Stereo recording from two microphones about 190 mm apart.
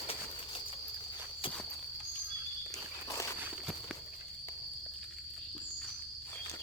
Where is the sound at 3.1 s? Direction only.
15° left (ahead or behind).